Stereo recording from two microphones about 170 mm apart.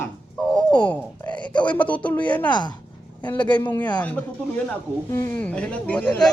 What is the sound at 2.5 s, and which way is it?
Speech, 25° left (ahead or behind).